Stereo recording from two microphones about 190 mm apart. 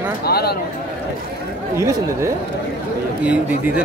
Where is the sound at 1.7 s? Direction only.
15° right (ahead or behind).